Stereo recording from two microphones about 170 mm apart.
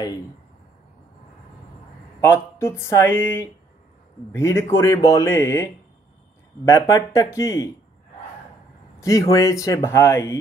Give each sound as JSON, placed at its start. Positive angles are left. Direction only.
{"t": 2.2, "sound": "a man's voice", "side_deg": 15}
{"t": 6.7, "sound": "speech", "side_deg": 20}
{"t": 9.0, "sound": "speech", "side_deg": 20}